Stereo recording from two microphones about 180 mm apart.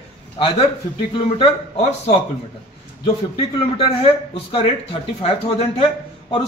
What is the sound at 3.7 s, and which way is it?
A man's voice, 30° left (ahead or behind).